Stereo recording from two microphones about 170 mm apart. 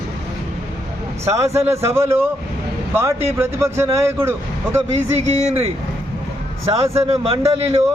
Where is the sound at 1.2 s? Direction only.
15° right (ahead or behind).